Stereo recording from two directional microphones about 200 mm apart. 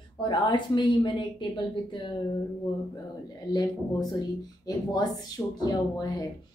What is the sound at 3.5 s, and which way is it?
Speech, 20° left (ahead or behind).